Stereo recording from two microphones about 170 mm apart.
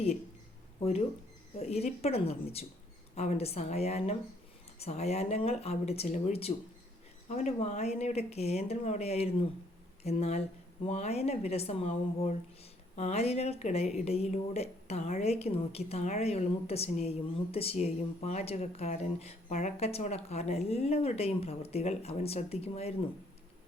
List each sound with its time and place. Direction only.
1.5 s a woman's voice: 40° left (ahead or behind)